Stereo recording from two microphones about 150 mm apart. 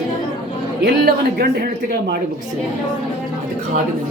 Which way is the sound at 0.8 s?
90° right.